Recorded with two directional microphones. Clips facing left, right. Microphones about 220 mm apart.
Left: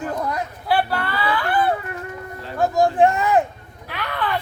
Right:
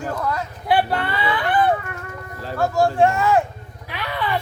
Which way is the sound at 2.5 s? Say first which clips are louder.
Left 1 dB; 15° left (ahead or behind).